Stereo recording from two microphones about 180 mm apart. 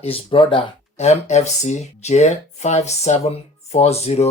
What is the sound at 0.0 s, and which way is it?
Speech, 30° left (ahead or behind).